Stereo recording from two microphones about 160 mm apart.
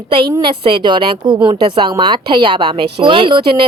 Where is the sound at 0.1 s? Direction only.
30° right (ahead or behind).